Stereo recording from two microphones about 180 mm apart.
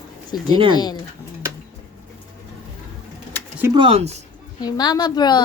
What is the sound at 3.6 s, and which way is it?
Speech, 25° right (ahead or behind).